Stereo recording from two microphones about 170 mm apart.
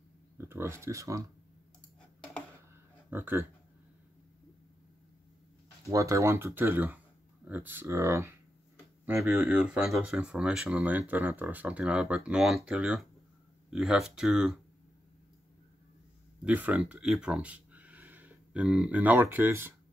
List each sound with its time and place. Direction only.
0.4 s speech: 15° right (ahead or behind)
3.1 s speech: 15° right (ahead or behind)
5.9 s speech: 20° right (ahead or behind); by 14.6 s 5° right (ahead or behind)
16.4 s speech: 10° right (ahead or behind)